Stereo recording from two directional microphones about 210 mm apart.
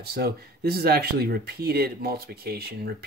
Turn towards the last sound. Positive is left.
turn(degrees=-45)  # may be behind; listen again after turning